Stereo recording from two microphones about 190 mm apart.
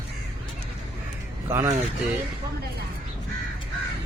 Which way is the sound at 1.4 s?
15° right (ahead or behind).